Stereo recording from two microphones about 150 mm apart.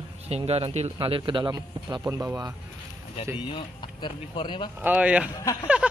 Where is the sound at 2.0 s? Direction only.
15° right (ahead or behind).